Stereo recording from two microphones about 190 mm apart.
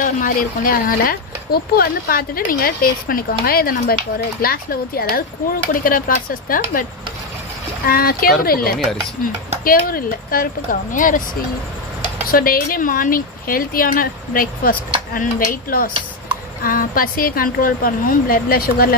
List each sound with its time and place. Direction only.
0.0 s speech: 45° left (ahead or behind)
12.3 s speech: 50° left (ahead or behind)